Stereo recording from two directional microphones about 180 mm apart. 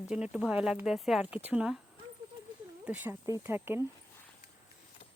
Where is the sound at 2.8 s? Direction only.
10° right (ahead or behind).